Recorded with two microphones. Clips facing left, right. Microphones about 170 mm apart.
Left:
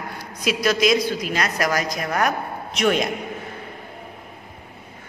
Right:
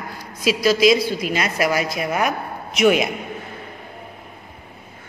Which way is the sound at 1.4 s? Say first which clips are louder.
Right 2 dB; 10° right (ahead or behind).